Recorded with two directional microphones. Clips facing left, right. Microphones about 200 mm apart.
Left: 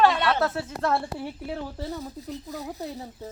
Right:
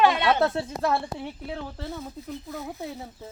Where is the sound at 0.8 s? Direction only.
5° left (ahead or behind).